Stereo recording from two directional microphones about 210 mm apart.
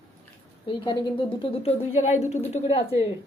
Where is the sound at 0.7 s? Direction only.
25° left (ahead or behind).